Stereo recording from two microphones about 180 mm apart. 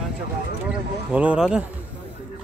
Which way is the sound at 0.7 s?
5° right (ahead or behind).